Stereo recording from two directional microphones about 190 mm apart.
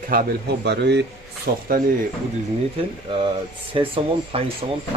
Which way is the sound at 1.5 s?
50° right (ahead or behind).